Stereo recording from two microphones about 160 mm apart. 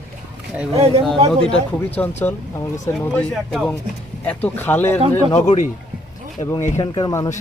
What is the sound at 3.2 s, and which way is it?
Speech, 5° left (ahead or behind).